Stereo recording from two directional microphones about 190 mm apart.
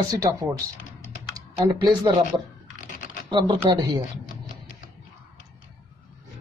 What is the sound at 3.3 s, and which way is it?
Speech, 25° right (ahead or behind).